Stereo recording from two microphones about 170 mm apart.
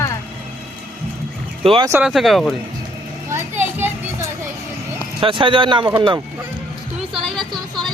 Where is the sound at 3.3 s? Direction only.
15° right (ahead or behind).